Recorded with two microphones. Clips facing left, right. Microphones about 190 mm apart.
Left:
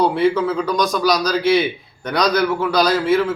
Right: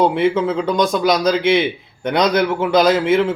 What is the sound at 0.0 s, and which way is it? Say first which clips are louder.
A man's voice: right 1 dB; 20° right (ahead or behind).